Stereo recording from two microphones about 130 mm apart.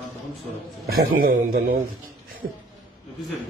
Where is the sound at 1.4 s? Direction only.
75° right (ahead or behind).